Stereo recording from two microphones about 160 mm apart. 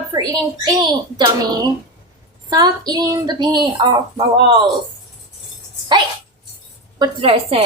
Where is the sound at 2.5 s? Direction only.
25° right (ahead or behind).